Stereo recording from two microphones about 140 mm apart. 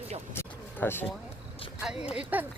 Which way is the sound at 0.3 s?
15° left (ahead or behind).